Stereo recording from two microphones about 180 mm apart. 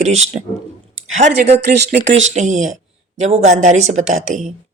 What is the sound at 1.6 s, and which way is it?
Speech, 65° right (ahead or behind).